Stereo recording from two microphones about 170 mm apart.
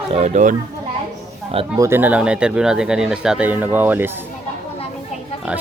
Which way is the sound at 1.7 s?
15° right (ahead or behind).